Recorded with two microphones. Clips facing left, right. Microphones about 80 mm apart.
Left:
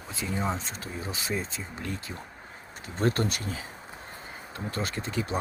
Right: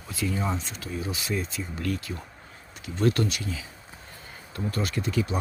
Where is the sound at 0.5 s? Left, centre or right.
Left.